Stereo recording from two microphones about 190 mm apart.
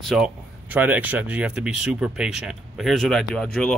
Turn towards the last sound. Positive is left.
turn(degrees=5)  # may be behind; listen again after turning